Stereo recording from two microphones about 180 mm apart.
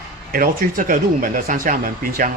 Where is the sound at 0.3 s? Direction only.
50° right (ahead or behind).